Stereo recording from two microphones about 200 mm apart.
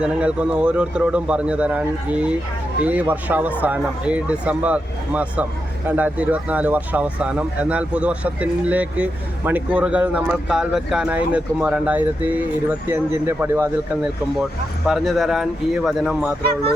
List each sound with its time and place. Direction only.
0.0 s a man's voice: 5° right (ahead or behind)
14.8 s a man's voice: centre (ahead or behind)